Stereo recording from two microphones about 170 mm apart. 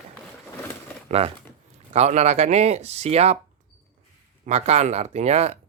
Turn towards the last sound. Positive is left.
turn(degrees=-40)  # may be behind; listen again after turning